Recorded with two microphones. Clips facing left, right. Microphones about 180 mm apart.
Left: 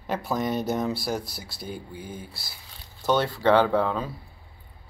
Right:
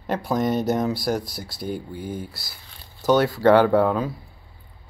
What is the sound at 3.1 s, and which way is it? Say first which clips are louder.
Speech: right 5 dB; 5° right (ahead or behind).